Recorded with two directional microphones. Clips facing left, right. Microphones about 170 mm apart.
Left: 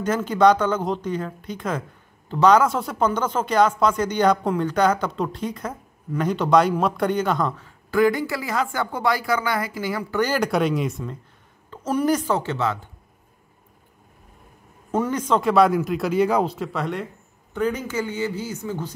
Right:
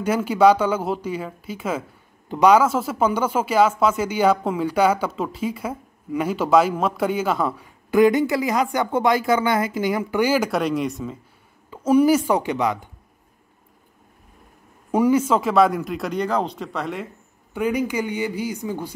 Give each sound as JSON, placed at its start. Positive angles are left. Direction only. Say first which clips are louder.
{"t": 0.0, "sound": "a man's voice", "louder": "right 1 dB", "side_deg": -10}
{"t": 14.9, "sound": "speech", "louder": "right 4 dB", "side_deg": -10}
{"t": 17.6, "sound": "a man's voice", "louder": "right 2 dB", "side_deg": -10}